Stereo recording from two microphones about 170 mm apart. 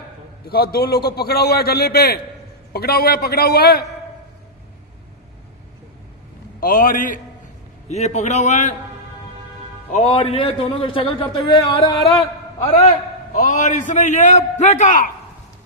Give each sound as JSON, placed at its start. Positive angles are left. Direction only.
{"t": 0.4, "sound": "a man's voice", "side_deg": 65}
{"t": 6.6, "sound": "a man's voice", "side_deg": 55}
{"t": 7.9, "sound": "a man's voice", "side_deg": 40}
{"t": 9.9, "sound": "a man's voice", "side_deg": 35}
{"t": 13.3, "sound": "a man's voice", "side_deg": 45}